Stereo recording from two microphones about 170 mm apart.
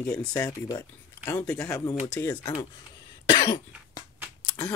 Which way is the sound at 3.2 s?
30° left (ahead or behind).